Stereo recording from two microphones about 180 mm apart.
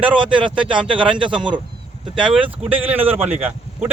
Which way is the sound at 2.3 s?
5° right (ahead or behind).